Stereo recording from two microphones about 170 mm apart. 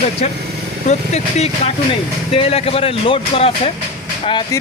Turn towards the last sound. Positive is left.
turn(degrees=30)  # may be behind; listen again after turning